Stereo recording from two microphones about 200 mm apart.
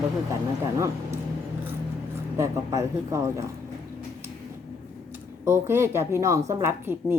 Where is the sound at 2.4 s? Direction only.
15° right (ahead or behind).